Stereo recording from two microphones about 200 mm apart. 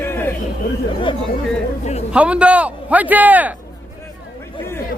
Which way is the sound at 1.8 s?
35° left (ahead or behind).